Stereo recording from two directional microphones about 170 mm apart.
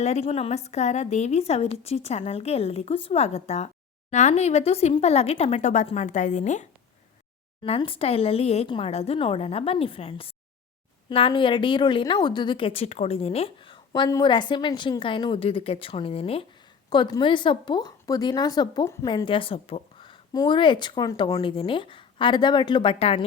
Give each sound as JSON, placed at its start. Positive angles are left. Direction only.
{"t": 0.0, "sound": "a woman's voice", "side_deg": 40}
{"t": 7.6, "sound": "a woman's voice", "side_deg": 35}
{"t": 21.4, "sound": "a woman's voice", "side_deg": 30}